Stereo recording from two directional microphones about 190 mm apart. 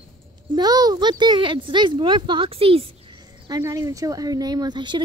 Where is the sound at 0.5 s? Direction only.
20° right (ahead or behind).